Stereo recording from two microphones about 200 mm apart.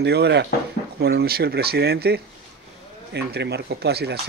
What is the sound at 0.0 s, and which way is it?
A man's voice, 55° right (ahead or behind).